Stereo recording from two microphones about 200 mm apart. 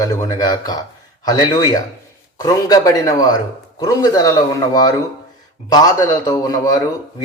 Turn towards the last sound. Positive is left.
turn(degrees=15)  # may be behind; listen again after turning